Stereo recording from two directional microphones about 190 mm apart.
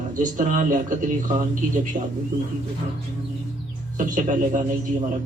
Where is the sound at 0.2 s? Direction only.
45° right (ahead or behind).